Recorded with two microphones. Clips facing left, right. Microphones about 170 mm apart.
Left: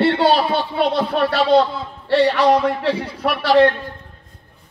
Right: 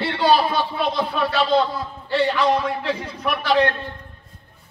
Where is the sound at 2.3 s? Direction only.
75° left (ahead or behind).